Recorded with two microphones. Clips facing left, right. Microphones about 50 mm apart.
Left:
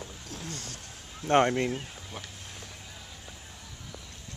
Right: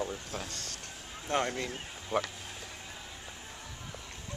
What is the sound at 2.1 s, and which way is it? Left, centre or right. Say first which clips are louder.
Speech: right 13 dB; right.